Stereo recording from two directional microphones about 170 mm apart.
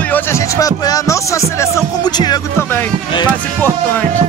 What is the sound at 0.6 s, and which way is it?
Speech, 20° left (ahead or behind).